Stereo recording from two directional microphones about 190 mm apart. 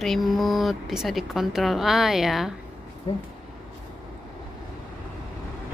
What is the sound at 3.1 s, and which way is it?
Speech, 30° left (ahead or behind).